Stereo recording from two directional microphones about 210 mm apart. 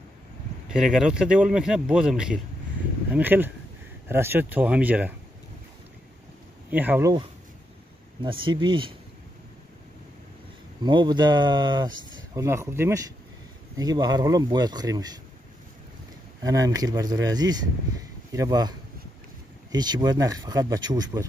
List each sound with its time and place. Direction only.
0.7 s speech: 5° right (ahead or behind)
6.7 s speech: 10° right (ahead or behind); by 8.9 s 25° right (ahead or behind)
10.8 s speech: 20° right (ahead or behind)
16.4 s speech: 15° right (ahead or behind)